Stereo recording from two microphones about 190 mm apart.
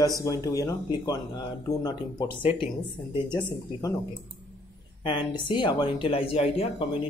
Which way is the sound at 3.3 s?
20° left (ahead or behind).